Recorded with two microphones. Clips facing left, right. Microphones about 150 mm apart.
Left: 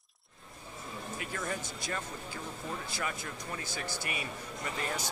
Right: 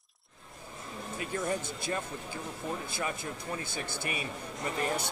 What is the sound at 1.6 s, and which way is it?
Speech, 55° right (ahead or behind).